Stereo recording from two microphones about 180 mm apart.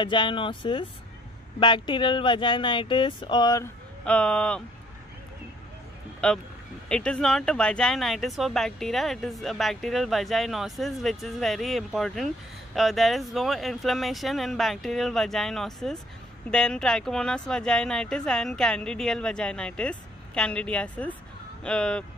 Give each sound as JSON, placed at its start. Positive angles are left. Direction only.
{"t": 0.0, "sound": "speech", "side_deg": 25}
{"t": 4.0, "sound": "speech", "side_deg": 5}
{"t": 6.2, "sound": "speech", "side_deg": 5}